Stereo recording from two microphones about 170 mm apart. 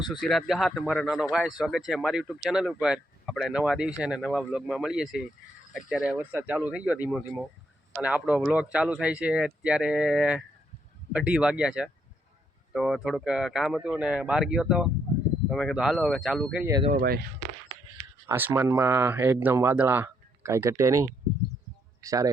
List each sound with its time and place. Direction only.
0.1 s speech: centre (ahead or behind)
16.9 s speech: 55° right (ahead or behind)
18.3 s speech: 15° right (ahead or behind)